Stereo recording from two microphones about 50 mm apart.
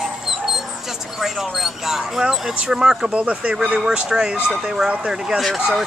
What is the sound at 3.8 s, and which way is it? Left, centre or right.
Speech, centre.